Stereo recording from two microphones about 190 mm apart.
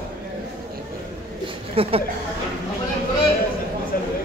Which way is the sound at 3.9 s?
50° left (ahead or behind).